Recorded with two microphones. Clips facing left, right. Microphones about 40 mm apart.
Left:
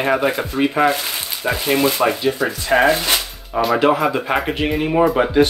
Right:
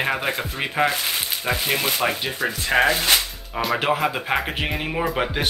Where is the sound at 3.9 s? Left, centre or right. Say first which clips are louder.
Left 4 dB; centre.